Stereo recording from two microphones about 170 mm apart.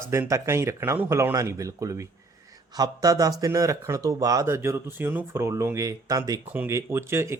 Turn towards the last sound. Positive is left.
turn(degrees=-15)  # may be behind; listen again after turning